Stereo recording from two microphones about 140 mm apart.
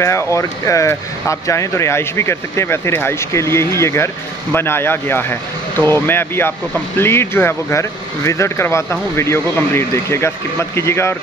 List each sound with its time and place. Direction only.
0.0 s speech: 20° left (ahead or behind)